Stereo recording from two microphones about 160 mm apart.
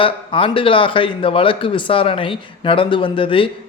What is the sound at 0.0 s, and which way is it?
Speech, 35° left (ahead or behind).